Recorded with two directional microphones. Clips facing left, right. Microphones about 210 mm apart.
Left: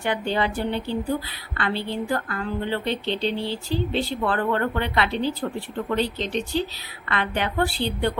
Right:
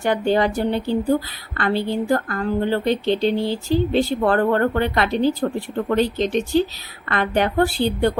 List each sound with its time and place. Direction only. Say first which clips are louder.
0.0 s a woman's voice: right 6 dB; 45° right (ahead or behind)